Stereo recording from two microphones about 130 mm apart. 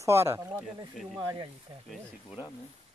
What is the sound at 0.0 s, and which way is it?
Speech, 20° right (ahead or behind).